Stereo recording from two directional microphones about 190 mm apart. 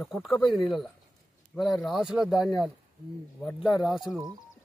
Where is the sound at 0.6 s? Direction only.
Centre (ahead or behind).